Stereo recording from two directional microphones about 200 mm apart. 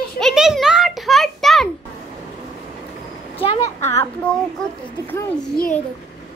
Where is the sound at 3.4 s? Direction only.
25° left (ahead or behind).